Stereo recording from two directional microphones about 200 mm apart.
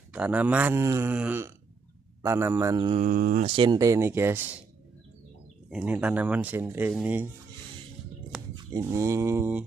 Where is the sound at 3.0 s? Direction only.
45° right (ahead or behind).